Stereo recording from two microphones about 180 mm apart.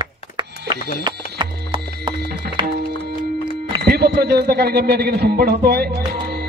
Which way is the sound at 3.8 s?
60° right (ahead or behind).